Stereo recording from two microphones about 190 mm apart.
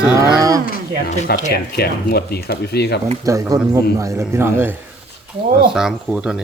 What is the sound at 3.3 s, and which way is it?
A man's voice, 20° right (ahead or behind).